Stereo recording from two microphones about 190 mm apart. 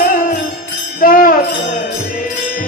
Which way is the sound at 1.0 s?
45° left (ahead or behind).